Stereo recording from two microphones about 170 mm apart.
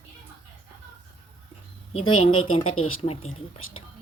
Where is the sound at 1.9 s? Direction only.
30° left (ahead or behind).